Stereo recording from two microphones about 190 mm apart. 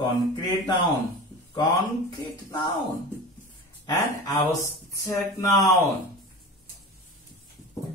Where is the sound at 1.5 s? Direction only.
20° left (ahead or behind).